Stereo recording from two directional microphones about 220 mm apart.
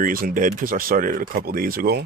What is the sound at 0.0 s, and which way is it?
Speech, 40° right (ahead or behind).